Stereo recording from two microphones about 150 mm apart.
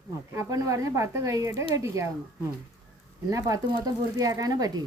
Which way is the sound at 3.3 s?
25° right (ahead or behind).